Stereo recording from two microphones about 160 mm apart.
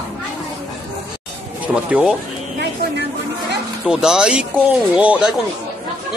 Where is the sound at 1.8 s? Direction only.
5° right (ahead or behind).